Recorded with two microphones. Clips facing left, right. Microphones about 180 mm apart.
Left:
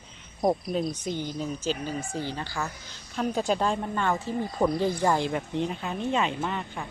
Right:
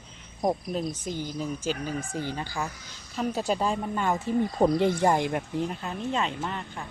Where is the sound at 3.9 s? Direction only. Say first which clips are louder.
Right 2 dB; 15° right (ahead or behind).